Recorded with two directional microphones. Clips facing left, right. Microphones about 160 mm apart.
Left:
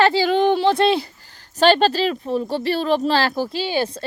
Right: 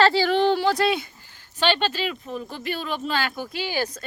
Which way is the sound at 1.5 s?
40° left (ahead or behind).